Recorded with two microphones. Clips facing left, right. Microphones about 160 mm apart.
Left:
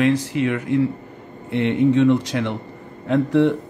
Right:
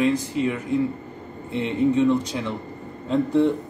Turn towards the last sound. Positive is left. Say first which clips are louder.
# left 3 dB
turn(degrees=70)  # may be behind; listen again after turning